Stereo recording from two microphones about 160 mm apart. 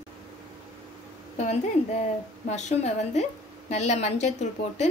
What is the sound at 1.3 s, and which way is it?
A woman's voice, 45° left (ahead or behind).